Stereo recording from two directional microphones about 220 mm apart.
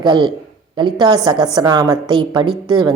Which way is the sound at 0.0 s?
20° right (ahead or behind).